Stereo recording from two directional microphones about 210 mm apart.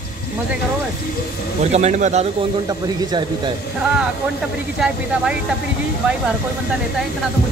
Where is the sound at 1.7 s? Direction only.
30° right (ahead or behind).